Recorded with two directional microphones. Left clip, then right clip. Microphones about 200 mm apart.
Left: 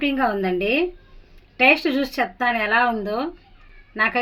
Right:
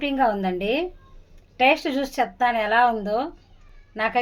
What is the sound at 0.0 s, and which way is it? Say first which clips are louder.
A woman's voice: even; 30° left (ahead or behind).